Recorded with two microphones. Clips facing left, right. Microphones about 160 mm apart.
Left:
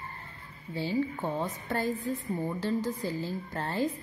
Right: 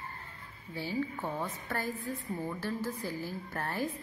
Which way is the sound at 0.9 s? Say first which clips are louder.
Left 4 dB; 20° left (ahead or behind).